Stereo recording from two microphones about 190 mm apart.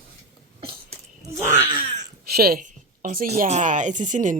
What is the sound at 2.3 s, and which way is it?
A woman's voice, 55° right (ahead or behind).